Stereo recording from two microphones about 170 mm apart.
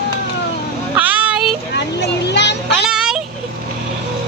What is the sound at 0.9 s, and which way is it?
Child singing, 10° right (ahead or behind).